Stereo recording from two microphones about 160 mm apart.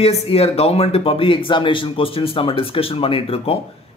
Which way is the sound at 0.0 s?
40° left (ahead or behind).